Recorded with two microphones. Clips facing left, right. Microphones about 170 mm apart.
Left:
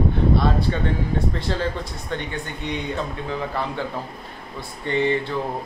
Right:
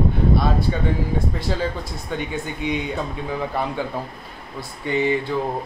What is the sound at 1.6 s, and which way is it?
Speech, 5° right (ahead or behind).